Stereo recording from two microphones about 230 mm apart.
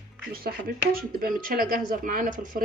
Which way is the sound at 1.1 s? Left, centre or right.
Right.